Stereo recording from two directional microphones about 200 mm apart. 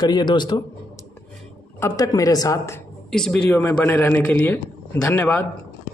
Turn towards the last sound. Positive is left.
turn(degrees=10)  # may be behind; listen again after turning